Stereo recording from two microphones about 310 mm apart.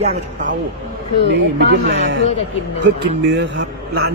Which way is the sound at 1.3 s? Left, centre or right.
Right.